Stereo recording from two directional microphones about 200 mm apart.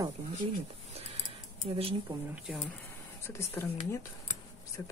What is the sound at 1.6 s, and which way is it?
Speech, 30° right (ahead or behind).